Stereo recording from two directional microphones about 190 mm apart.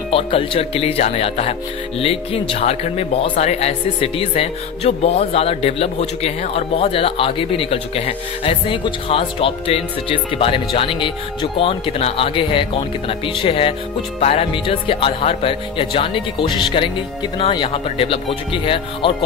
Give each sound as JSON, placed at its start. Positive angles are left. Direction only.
{"t": 0.1, "sound": "speech", "side_deg": 30}